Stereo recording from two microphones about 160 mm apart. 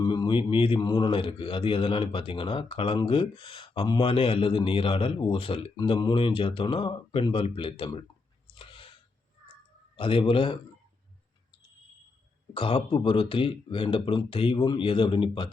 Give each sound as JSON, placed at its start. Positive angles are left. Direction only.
{"t": 0.0, "sound": "a man's voice", "side_deg": 25}
{"t": 8.5, "sound": "chewing", "side_deg": 35}
{"t": 9.9, "sound": "a man's voice", "side_deg": 35}
{"t": 12.5, "sound": "a man's voice", "side_deg": 35}